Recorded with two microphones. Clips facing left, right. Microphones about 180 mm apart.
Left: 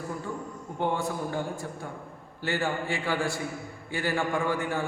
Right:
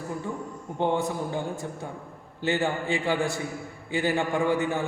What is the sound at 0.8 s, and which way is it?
Speech, 20° right (ahead or behind).